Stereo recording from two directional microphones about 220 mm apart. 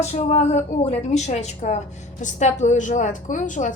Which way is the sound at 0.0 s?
30° left (ahead or behind).